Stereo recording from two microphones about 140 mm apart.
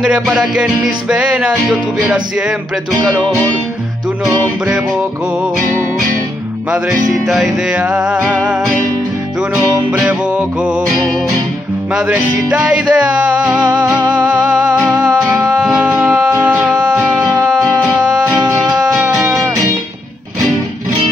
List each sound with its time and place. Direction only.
0.0 s music: 5° right (ahead or behind)
7.2 s music: 5° right (ahead or behind)
9.9 s music: 10° right (ahead or behind)
19.1 s music: 20° right (ahead or behind)